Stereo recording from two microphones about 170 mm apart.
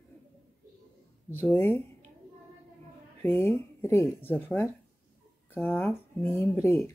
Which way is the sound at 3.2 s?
15° left (ahead or behind).